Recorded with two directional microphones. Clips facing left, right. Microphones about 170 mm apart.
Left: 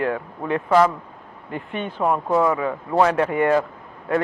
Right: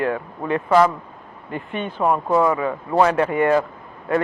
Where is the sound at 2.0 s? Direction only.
25° right (ahead or behind).